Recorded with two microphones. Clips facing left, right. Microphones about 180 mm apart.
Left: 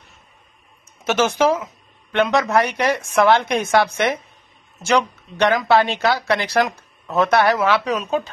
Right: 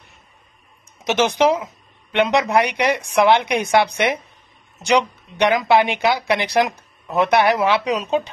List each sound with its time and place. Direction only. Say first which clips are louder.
1.0 s speech: right 1 dB; 15° right (ahead or behind)